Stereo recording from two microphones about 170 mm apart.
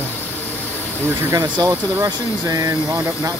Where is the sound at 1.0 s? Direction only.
15° right (ahead or behind).